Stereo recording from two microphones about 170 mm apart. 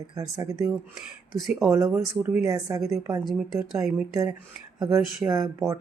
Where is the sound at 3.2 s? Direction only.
Centre (ahead or behind).